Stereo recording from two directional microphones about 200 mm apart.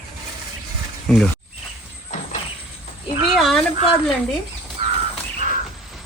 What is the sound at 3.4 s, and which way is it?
Speech, centre (ahead or behind).